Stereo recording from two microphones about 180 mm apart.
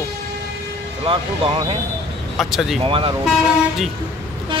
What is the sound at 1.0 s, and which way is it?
Speech, 25° right (ahead or behind).